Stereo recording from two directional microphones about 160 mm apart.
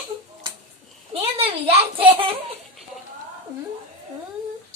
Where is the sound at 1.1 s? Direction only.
35° right (ahead or behind).